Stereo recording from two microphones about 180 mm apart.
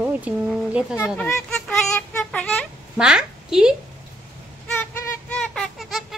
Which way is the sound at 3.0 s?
5° right (ahead or behind).